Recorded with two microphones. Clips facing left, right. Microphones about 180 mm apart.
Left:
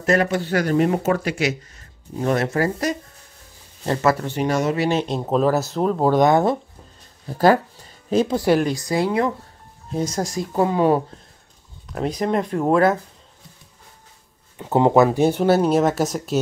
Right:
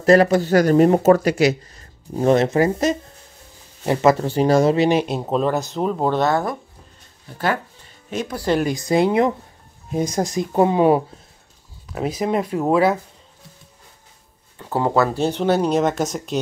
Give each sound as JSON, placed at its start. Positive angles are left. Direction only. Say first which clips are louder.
{"t": 0.0, "sound": "speech", "louder": "right 6 dB", "side_deg": -35}
{"t": 2.2, "sound": "speech", "louder": "right 5 dB", "side_deg": -20}
{"t": 4.2, "sound": "speech", "louder": "right 5 dB", "side_deg": -35}
{"t": 4.8, "sound": "speech", "louder": "right 3 dB", "side_deg": -10}
{"t": 7.3, "sound": "speech", "louder": "left 7 dB", "side_deg": 35}
{"t": 8.7, "sound": "speech", "louder": "right 4 dB", "side_deg": -20}
{"t": 11.9, "sound": "speech", "louder": "even", "side_deg": -5}
{"t": 14.6, "sound": "speech", "louder": "left 4 dB", "side_deg": 20}